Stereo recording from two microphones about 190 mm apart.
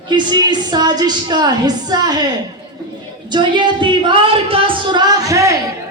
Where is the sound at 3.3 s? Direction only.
25° right (ahead or behind).